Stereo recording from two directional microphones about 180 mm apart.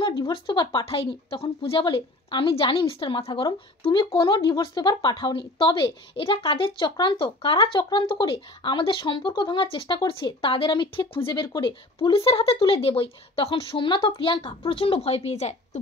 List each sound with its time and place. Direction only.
0.0 s a woman's voice: 25° left (ahead or behind)